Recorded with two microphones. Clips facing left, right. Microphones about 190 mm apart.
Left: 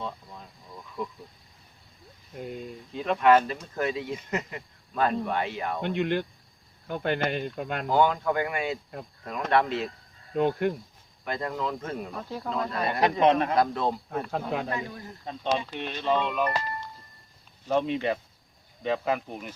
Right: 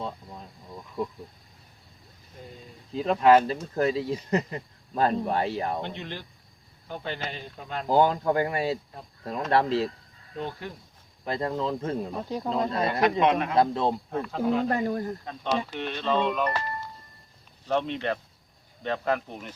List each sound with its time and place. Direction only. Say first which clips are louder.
2.9 s speech: right 2 dB; 30° right (ahead or behind)
5.8 s speech: left 9 dB; 60° left (ahead or behind)
7.9 s speech: right 2 dB; 35° right (ahead or behind)
10.3 s speech: left 10 dB; 60° left (ahead or behind)
11.3 s speech: right 2 dB; 30° right (ahead or behind)
13.1 s a man's voice: left 1 dB; 30° left (ahead or behind)
13.6 s speech: right 2 dB; 25° right (ahead or behind)
14.7 s speech: right 7 dB; 50° right (ahead or behind)
15.3 s speech: left 3 dB; 20° left (ahead or behind)
17.7 s speech: left 2 dB; 10° left (ahead or behind)